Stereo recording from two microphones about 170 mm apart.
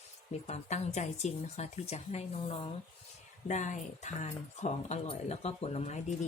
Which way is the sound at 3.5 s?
45° left (ahead or behind).